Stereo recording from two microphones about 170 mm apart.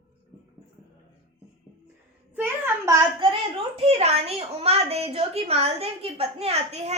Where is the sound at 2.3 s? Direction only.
10° right (ahead or behind).